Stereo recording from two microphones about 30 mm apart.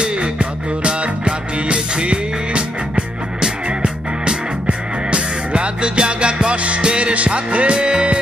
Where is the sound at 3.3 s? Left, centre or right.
Right.